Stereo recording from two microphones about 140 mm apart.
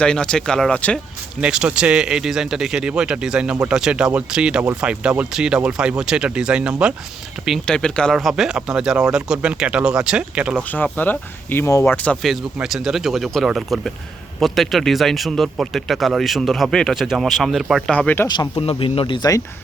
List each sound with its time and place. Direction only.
0.0 s speech: 5° left (ahead or behind)
1.4 s speech: 5° right (ahead or behind)
10.7 s speech: 10° left (ahead or behind)
12.5 s speech: centre (ahead or behind)
17.9 s speech: 10° left (ahead or behind)
18.3 s speech: 30° left (ahead or behind)